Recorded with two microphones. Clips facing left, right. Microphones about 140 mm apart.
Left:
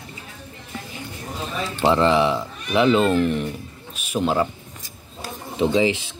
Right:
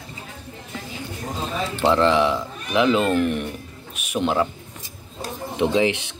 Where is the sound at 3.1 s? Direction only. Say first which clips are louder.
Left 1 dB; 15° right (ahead or behind).